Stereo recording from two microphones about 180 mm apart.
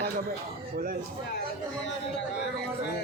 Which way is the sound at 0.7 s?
50° right (ahead or behind).